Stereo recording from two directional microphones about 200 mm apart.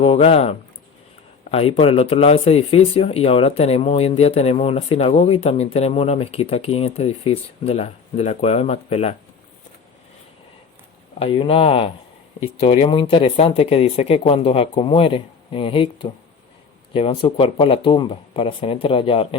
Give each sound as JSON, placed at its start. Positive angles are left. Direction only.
{"t": 0.0, "sound": "speech", "side_deg": 30}
{"t": 11.2, "sound": "speech", "side_deg": 30}